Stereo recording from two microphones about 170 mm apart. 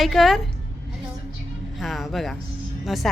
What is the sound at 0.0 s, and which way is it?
Speech, centre (ahead or behind).